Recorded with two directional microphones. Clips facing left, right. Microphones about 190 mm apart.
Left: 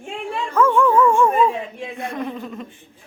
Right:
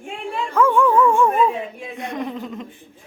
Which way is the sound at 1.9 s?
20° right (ahead or behind).